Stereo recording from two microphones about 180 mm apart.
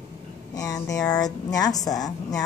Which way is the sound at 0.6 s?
20° left (ahead or behind).